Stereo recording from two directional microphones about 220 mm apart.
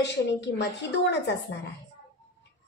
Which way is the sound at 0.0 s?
55° left (ahead or behind).